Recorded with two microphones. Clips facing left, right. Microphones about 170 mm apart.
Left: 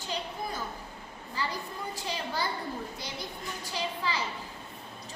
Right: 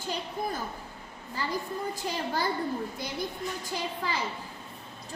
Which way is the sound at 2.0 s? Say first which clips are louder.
Right 1 dB; 50° right (ahead or behind).